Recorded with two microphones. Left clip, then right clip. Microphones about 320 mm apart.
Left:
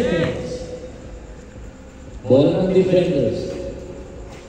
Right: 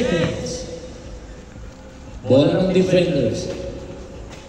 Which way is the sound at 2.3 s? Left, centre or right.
Right.